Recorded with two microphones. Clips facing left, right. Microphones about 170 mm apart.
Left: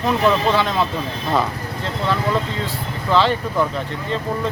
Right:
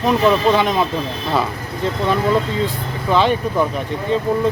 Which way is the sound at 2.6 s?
15° right (ahead or behind).